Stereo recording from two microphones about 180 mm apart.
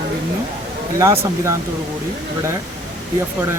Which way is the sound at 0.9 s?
15° right (ahead or behind).